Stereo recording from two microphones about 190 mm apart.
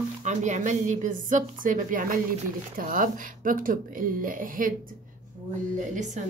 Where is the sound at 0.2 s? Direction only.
40° right (ahead or behind).